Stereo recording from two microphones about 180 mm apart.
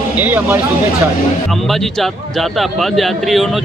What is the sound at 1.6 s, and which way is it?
Speech, centre (ahead or behind).